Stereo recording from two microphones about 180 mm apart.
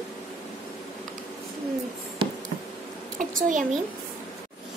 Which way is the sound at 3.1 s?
45° right (ahead or behind).